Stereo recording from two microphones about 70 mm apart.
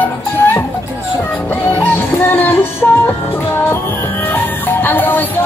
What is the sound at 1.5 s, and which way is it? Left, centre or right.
Music, left.